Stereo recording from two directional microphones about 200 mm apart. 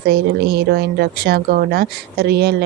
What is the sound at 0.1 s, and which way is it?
Speech, 50° right (ahead or behind).